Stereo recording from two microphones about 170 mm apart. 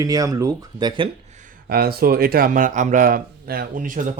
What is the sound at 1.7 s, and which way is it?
A man's voice, 65° right (ahead or behind).